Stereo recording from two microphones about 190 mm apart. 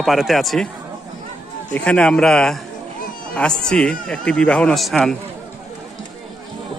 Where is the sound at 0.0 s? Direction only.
Centre (ahead or behind).